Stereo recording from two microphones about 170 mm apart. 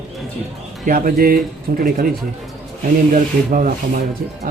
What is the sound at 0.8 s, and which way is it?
Speech, 55° right (ahead or behind).